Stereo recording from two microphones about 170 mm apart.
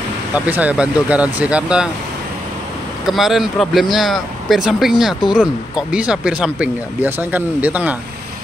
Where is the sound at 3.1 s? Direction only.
Centre (ahead or behind).